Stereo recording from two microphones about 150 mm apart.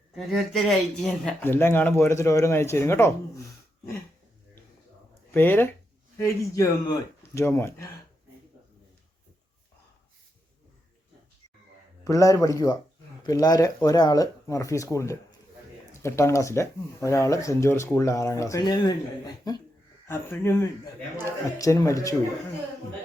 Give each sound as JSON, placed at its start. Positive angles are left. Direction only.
{"t": 0.2, "sound": "speech", "side_deg": 0}
{"t": 1.4, "sound": "speech", "side_deg": 15}
{"t": 5.3, "sound": "speech", "side_deg": 15}
{"t": 12.0, "sound": "speech", "side_deg": 20}